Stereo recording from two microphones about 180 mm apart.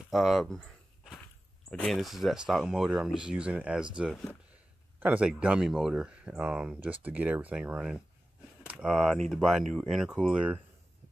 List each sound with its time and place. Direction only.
0.1 s speech: centre (ahead or behind)
1.7 s speech: 5° left (ahead or behind)
5.0 s speech: 5° right (ahead or behind)